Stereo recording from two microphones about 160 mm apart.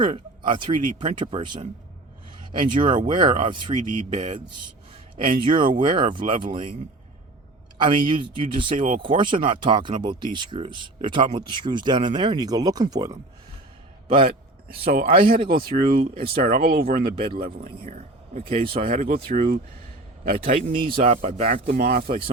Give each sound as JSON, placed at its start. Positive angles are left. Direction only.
{"t": 0.0, "sound": "speech", "side_deg": -30}
{"t": 3.8, "sound": "speech", "side_deg": -50}
{"t": 5.2, "sound": "speech", "side_deg": -30}
{"t": 7.8, "sound": "speech", "side_deg": -30}
{"t": 14.8, "sound": "speech", "side_deg": -65}
{"t": 18.6, "sound": "speech", "side_deg": -35}
{"t": 18.9, "sound": "speech", "side_deg": -65}
{"t": 20.6, "sound": "speech", "side_deg": -65}
{"t": 21.0, "sound": "speech", "side_deg": -45}